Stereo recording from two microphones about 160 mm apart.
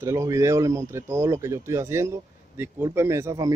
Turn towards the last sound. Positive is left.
turn(degrees=-20)  # may be behind; listen again after turning